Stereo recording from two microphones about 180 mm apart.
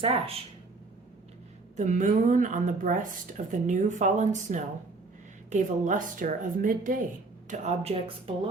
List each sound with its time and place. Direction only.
0.0 s speech: 30° right (ahead or behind)
1.7 s speech: 40° right (ahead or behind)